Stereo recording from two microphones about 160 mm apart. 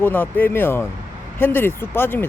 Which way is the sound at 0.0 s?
10° left (ahead or behind).